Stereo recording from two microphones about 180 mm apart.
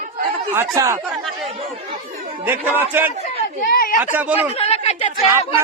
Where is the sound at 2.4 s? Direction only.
10° right (ahead or behind).